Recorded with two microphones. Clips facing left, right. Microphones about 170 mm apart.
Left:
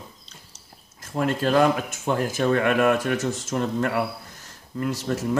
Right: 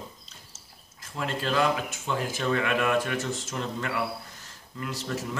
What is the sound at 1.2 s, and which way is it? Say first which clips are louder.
Speech: left 7 dB; 50° left (ahead or behind).